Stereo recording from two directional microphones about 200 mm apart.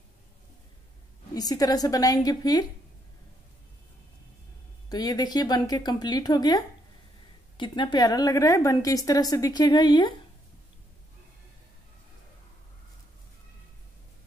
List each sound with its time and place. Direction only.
1.3 s a woman's voice: 20° left (ahead or behind)
4.8 s a woman's voice: 20° left (ahead or behind)